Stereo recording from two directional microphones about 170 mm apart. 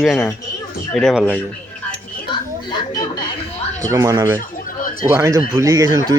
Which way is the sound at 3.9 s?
20° right (ahead or behind).